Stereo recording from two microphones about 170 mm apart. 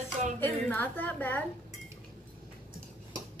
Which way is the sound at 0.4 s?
10° left (ahead or behind).